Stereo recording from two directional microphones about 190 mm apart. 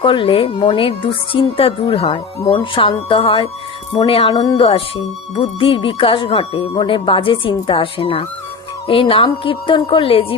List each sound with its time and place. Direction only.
0.0 s speech: 25° left (ahead or behind)